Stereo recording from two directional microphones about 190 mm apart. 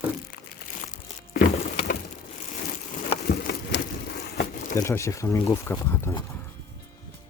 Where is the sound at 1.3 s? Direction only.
50° left (ahead or behind).